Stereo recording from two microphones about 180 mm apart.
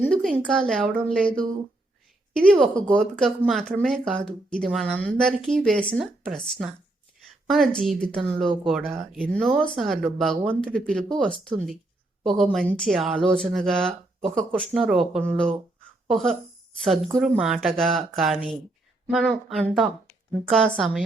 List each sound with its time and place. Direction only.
0.0 s a woman's voice: 5° left (ahead or behind)
7.4 s a woman's voice: centre (ahead or behind)